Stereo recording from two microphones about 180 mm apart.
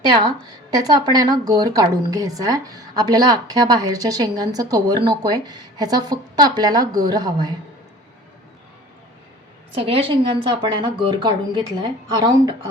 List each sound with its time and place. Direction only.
0.1 s a woman's voice: 25° right (ahead or behind)
9.7 s a woman's voice: 30° right (ahead or behind)